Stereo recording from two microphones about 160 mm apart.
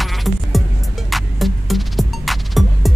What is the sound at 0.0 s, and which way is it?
Music, centre (ahead or behind).